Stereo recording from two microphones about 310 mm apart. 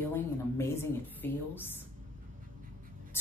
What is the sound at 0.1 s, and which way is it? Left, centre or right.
Speech, centre.